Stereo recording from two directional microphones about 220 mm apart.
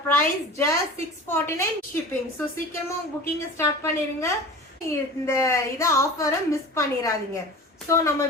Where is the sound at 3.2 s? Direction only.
10° left (ahead or behind).